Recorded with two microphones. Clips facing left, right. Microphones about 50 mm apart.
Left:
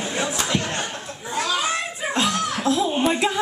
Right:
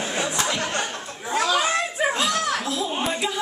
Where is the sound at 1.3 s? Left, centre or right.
Right.